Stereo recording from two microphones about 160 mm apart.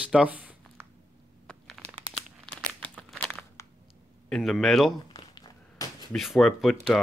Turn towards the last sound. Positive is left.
turn(degrees=0)  # may be behind; listen again after turning